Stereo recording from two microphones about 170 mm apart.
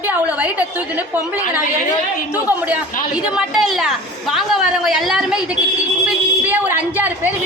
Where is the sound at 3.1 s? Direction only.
5° right (ahead or behind).